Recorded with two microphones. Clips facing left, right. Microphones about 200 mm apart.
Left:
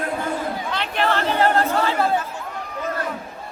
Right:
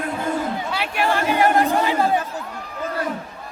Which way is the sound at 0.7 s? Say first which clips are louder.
Left 1 dB; 10° right (ahead or behind).